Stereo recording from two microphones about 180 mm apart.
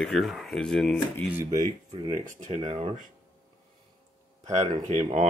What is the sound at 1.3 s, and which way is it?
Speech, 15° right (ahead or behind).